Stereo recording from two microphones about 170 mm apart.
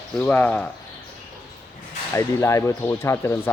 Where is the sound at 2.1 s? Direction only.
20° left (ahead or behind).